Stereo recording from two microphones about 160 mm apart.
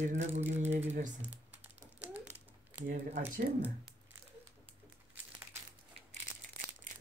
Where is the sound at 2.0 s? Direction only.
10° right (ahead or behind).